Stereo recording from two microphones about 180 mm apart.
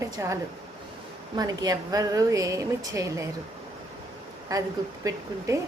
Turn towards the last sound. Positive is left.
turn(degrees=-15)  # may be behind; listen again after turning